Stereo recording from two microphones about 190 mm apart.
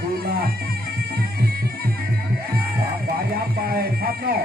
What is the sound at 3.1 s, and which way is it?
Speech, 50° right (ahead or behind).